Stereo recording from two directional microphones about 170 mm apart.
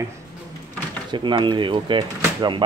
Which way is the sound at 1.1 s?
25° right (ahead or behind).